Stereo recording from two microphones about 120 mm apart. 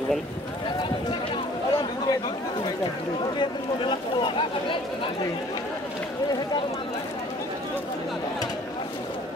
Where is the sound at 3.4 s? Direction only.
40° left (ahead or behind).